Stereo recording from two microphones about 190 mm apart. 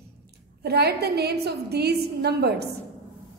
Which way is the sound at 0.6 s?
60° right (ahead or behind).